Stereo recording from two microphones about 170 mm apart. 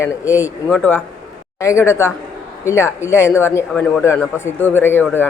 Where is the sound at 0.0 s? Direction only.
15° left (ahead or behind).